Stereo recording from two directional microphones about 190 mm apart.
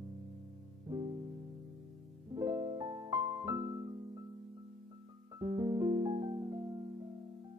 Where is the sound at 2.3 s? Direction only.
15° right (ahead or behind).